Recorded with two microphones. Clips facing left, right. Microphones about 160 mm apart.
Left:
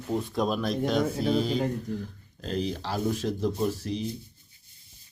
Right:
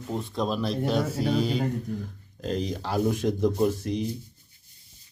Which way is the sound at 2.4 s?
40° right (ahead or behind).